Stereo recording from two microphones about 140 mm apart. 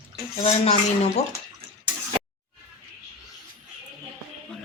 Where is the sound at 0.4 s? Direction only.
45° left (ahead or behind).